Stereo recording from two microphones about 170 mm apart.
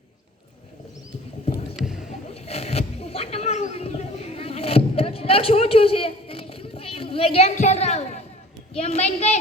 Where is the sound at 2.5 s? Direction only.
35° left (ahead or behind).